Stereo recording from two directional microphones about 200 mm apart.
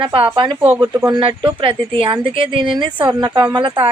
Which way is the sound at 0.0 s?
25° right (ahead or behind).